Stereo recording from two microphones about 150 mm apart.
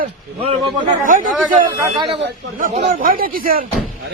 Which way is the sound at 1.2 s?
5° right (ahead or behind).